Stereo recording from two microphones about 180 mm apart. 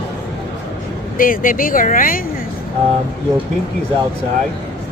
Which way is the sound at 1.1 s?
50° left (ahead or behind).